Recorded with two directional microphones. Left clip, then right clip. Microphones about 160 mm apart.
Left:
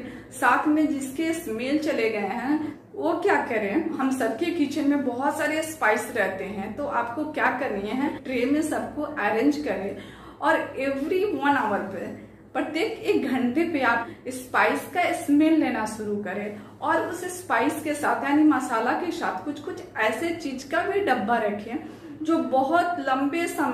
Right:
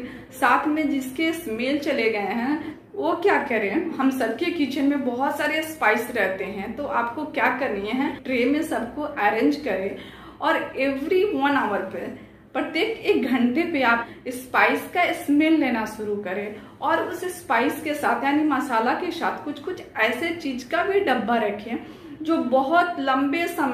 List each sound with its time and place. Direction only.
0.4 s a woman's voice: 20° right (ahead or behind)
12.5 s a woman's voice: 20° right (ahead or behind)
17.5 s a woman's voice: 20° right (ahead or behind)